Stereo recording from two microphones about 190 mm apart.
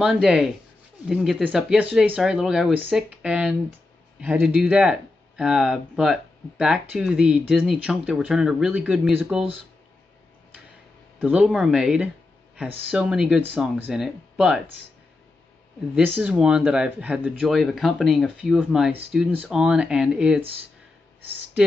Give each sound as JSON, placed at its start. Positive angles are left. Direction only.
{"t": 0.0, "sound": "speech", "side_deg": 0}
{"t": 11.1, "sound": "speech", "side_deg": -5}
{"t": 16.2, "sound": "speech", "side_deg": -5}